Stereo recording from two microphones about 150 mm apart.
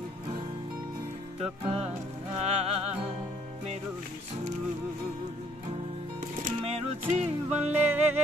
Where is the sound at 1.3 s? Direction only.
45° right (ahead or behind).